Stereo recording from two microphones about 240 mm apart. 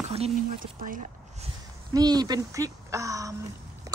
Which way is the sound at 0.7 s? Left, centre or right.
Right.